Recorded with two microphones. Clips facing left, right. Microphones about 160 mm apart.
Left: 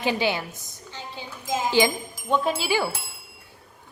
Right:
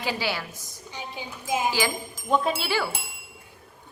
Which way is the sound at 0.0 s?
20° left (ahead or behind).